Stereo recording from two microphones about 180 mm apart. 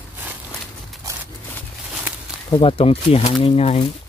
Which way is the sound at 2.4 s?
30° left (ahead or behind).